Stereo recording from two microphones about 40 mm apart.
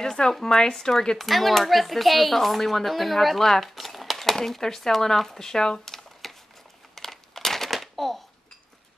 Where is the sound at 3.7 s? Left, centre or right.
Centre.